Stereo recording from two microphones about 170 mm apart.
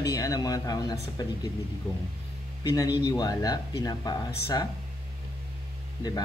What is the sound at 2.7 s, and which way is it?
Speech, 20° left (ahead or behind).